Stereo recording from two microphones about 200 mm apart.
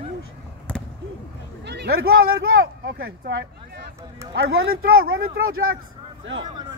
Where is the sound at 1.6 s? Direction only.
55° right (ahead or behind).